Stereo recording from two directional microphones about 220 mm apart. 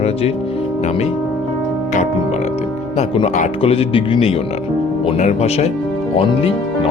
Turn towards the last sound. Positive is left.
turn(degrees=25)  # may be behind; listen again after turning